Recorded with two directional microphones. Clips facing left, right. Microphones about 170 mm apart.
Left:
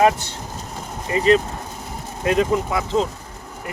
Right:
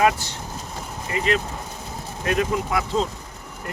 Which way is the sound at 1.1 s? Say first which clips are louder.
Left 7 dB; 30° left (ahead or behind).